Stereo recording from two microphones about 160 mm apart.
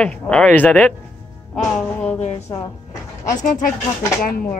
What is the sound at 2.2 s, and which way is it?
Speech, 45° left (ahead or behind).